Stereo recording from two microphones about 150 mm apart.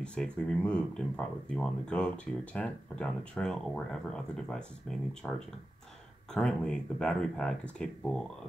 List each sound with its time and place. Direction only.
0.0 s speech: 5° left (ahead or behind)
6.3 s speech: 5° left (ahead or behind)